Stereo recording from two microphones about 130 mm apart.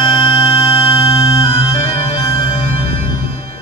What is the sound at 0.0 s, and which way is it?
Music, 30° left (ahead or behind).